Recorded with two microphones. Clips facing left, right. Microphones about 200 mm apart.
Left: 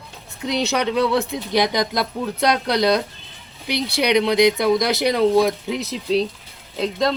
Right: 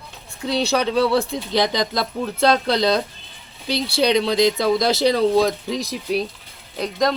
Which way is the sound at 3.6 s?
15° left (ahead or behind).